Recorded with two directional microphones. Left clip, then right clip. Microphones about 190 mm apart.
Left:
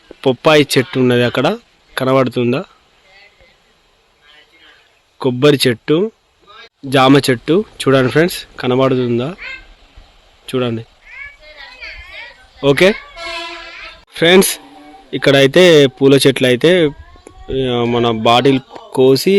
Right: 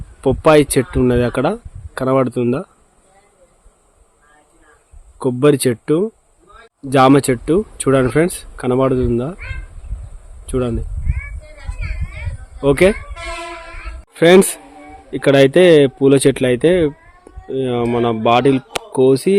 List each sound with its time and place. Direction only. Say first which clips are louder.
0.2 s speech: left 1 dB; centre (ahead or behind)
5.2 s speech: left 2 dB; centre (ahead or behind)
10.4 s speech: left 2 dB; centre (ahead or behind)
11.1 s a sound: left 3 dB; 60° right (ahead or behind)
12.6 s speech: left 2 dB; centre (ahead or behind)
14.1 s speech: even; centre (ahead or behind)